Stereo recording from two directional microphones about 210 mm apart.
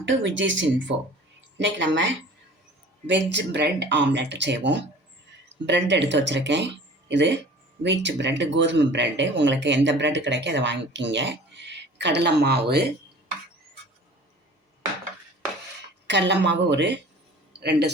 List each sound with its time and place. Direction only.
0.0 s speech: 60° right (ahead or behind)
3.3 s speech: 55° right (ahead or behind)
16.0 s speech: 55° right (ahead or behind)